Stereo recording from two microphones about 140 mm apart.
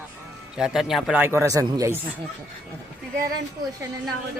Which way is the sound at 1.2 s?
20° right (ahead or behind).